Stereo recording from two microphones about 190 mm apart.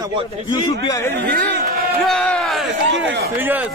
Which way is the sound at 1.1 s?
60° right (ahead or behind).